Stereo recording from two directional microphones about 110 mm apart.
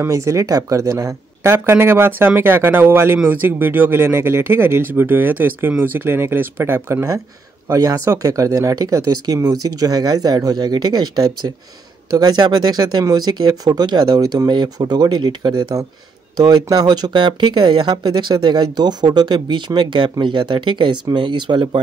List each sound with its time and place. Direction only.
0.0 s speech: 25° right (ahead or behind); by 21.8 s 45° right (ahead or behind)